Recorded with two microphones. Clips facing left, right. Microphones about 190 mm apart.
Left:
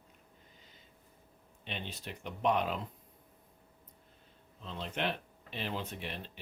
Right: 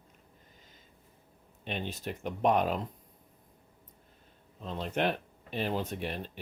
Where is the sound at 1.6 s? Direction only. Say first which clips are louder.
Right 7 dB; 45° right (ahead or behind).